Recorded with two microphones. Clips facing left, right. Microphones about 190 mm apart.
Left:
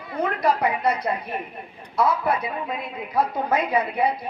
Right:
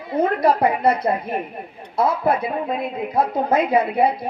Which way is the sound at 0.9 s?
55° right (ahead or behind).